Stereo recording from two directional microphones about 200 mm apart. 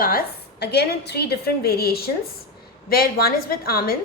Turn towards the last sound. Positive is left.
turn(degrees=50)  # may be behind; listen again after turning